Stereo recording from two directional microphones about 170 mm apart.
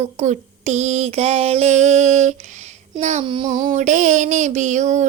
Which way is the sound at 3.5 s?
50° right (ahead or behind).